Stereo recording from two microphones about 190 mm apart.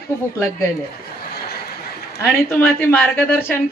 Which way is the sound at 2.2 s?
Centre (ahead or behind).